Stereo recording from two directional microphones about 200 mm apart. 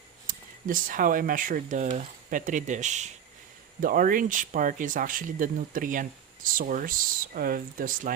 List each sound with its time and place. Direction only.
0.3 s speech: 45° right (ahead or behind)